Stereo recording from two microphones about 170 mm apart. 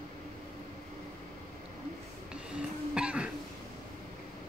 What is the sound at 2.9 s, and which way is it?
Throat clearing, 5° right (ahead or behind).